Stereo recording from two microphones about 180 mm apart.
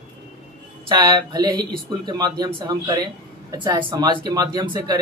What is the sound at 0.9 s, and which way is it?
Speech, 25° right (ahead or behind).